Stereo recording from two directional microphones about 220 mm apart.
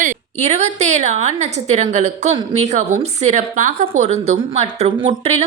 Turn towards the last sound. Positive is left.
turn(degrees=-30)  # may be behind; listen again after turning